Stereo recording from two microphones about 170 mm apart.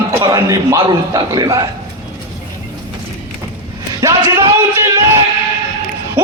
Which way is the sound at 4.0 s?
20° right (ahead or behind).